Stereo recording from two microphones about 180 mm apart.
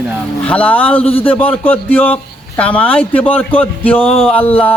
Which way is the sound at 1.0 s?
30° left (ahead or behind).